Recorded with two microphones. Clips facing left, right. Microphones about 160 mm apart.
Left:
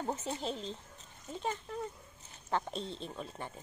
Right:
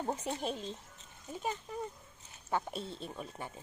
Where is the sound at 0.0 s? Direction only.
15° right (ahead or behind).